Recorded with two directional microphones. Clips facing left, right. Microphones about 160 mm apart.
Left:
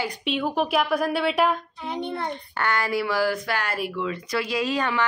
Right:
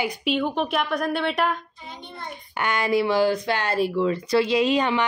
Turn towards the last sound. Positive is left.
turn(degrees=-20)  # may be behind; listen again after turning